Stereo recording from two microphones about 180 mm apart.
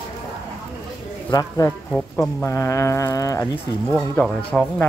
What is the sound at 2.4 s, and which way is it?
Speech, 15° left (ahead or behind).